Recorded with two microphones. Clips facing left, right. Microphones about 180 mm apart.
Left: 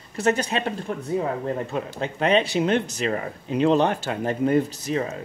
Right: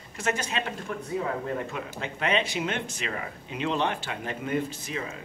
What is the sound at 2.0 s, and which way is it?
Speech, 35° left (ahead or behind).